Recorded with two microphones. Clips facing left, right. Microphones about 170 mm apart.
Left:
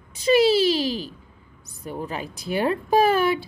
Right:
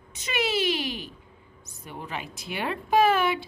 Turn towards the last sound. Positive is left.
turn(degrees=40)  # may be behind; listen again after turning